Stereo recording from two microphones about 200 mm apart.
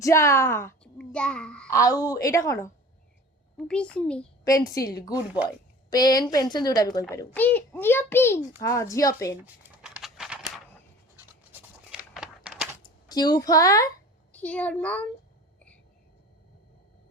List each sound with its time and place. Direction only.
0.0 s a woman's voice: 15° left (ahead or behind)
1.7 s a child's voice: 15° left (ahead or behind)
4.4 s a child's voice: 15° left (ahead or behind)
5.1 s speech: 5° right (ahead or behind)
5.9 s a woman's voice: 20° left (ahead or behind)
9.4 s crumpling: 5° right (ahead or behind)
11.9 s a sound: 5° right (ahead or behind)
13.1 s a child's voice: 20° left (ahead or behind)